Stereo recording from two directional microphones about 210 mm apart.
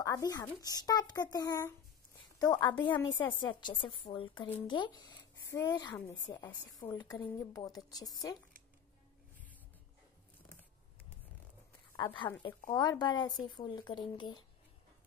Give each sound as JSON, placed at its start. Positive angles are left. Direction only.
{"t": 0.0, "sound": "a child's voice", "side_deg": 15}
{"t": 5.9, "sound": "a child's voice", "side_deg": 10}
{"t": 6.3, "sound": "a woman's voice", "side_deg": 20}
{"t": 12.2, "sound": "a woman's voice", "side_deg": 20}